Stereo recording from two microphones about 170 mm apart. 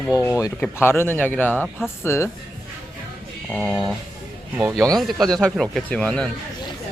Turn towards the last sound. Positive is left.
turn(degrees=5)  # may be behind; listen again after turning